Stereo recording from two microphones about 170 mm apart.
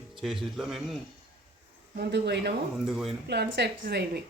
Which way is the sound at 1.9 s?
80° right.